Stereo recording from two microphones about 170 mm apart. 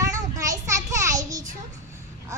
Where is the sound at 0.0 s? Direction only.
20° right (ahead or behind).